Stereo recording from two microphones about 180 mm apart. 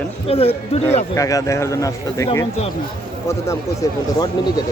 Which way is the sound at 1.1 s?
20° left (ahead or behind).